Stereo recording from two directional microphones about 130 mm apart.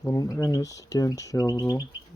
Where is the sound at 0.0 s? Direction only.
25° left (ahead or behind).